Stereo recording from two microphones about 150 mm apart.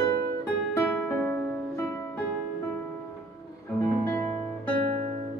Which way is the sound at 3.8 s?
15° left (ahead or behind).